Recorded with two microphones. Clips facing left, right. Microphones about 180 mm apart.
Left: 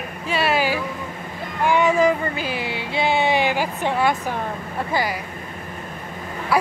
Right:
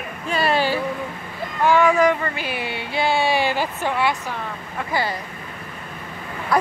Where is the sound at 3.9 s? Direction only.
45° left (ahead or behind).